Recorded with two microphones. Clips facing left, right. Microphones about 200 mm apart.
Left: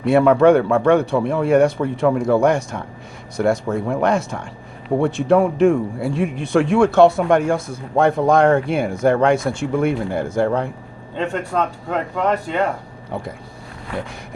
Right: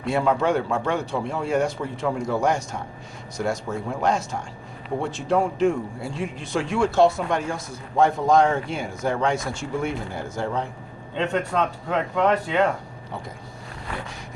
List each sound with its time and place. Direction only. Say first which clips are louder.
0.0 s speech: left 9 dB; 60° left (ahead or behind)
11.5 s speech: left 2 dB; 5° left (ahead or behind)